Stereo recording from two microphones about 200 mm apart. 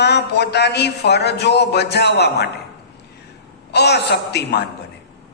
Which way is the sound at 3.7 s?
55° left (ahead or behind).